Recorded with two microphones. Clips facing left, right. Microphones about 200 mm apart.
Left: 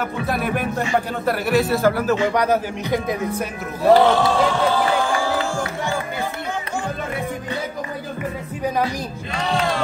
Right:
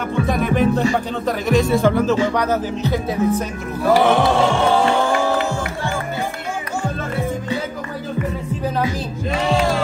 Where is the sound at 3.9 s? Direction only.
20° right (ahead or behind).